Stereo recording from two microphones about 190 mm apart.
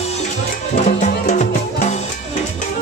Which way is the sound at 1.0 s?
40° left (ahead or behind).